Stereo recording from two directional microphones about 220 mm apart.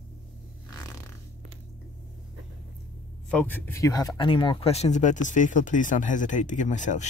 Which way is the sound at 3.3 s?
5° left (ahead or behind).